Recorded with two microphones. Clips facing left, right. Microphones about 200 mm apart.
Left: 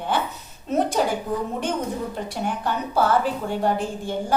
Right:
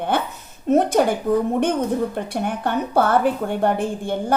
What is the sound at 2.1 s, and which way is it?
A woman's voice, 55° right (ahead or behind).